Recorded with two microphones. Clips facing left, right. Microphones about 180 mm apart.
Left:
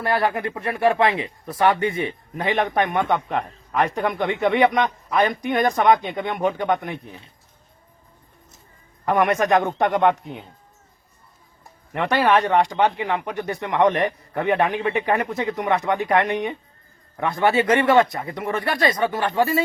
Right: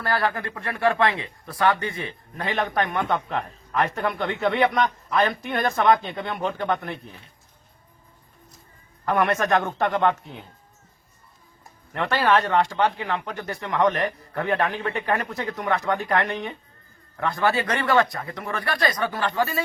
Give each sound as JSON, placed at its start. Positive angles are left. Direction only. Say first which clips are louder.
{"t": 0.0, "sound": "speech", "louder": "left 3 dB", "side_deg": 25}
{"t": 9.0, "sound": "speech", "louder": "left 3 dB", "side_deg": 15}
{"t": 11.9, "sound": "speech", "louder": "left 2 dB", "side_deg": 15}